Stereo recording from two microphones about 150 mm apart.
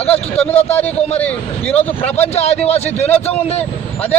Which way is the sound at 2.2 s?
45° left (ahead or behind).